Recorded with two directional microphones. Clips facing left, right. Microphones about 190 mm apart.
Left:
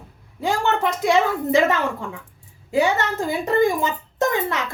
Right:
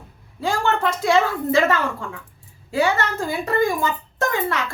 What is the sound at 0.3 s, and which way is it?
A woman's voice, 15° left (ahead or behind).